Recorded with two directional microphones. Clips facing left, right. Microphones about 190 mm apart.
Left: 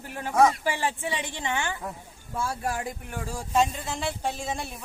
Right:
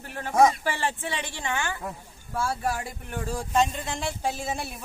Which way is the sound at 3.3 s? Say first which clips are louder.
Even; 5° left (ahead or behind).